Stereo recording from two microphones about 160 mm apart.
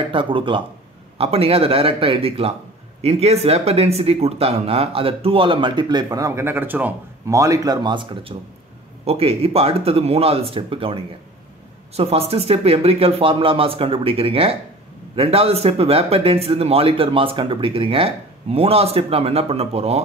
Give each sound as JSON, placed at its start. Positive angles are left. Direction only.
{"t": 0.1, "sound": "speech", "side_deg": -30}
{"t": 12.0, "sound": "speech", "side_deg": -40}